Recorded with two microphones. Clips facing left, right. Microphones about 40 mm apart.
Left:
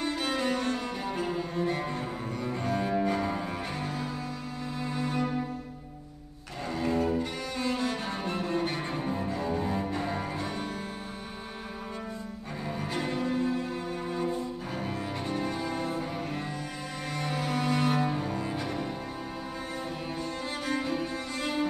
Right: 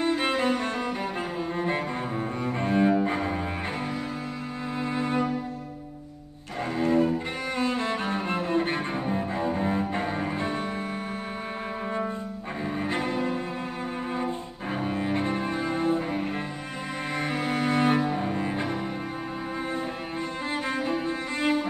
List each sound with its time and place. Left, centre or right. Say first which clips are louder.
0.0 s cello: right 5 dB; right
4.7 s music: right 5 dB; right
6.8 s cello: right 4 dB; right
12.9 s cello: even; right
17.2 s music: right 3 dB; right
18.1 s cello: right 4 dB; right
20.6 s cello: right 1 dB; right